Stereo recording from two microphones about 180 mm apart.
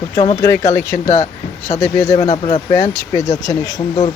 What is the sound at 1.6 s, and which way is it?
Speech, 15° left (ahead or behind).